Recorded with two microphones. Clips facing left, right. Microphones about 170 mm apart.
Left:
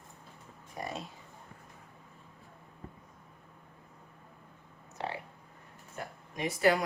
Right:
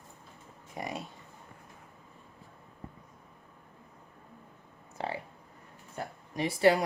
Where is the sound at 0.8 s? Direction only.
20° right (ahead or behind).